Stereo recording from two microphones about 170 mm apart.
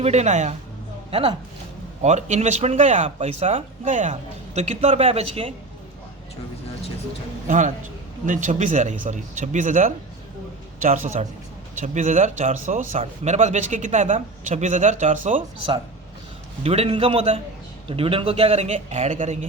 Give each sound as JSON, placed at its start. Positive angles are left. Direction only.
{"t": 0.0, "sound": "speech", "side_deg": -40}
{"t": 7.4, "sound": "a man's voice", "side_deg": -45}